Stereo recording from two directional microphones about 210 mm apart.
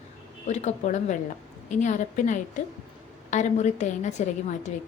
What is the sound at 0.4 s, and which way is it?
A woman's voice, 35° left (ahead or behind).